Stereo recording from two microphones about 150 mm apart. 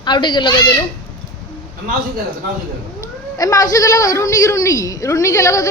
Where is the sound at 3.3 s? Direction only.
25° left (ahead or behind).